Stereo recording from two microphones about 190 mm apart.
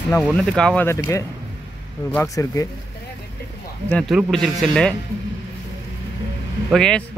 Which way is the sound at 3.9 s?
Centre (ahead or behind).